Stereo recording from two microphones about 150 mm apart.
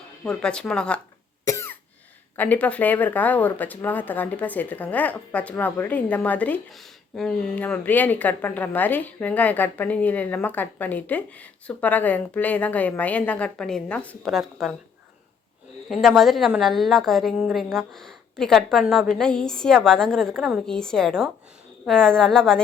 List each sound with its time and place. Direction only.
0.3 s a woman's voice: 5° left (ahead or behind)
1.5 s cough: 15° left (ahead or behind)
2.3 s a woman's voice: 10° left (ahead or behind)
15.9 s a woman's voice: centre (ahead or behind)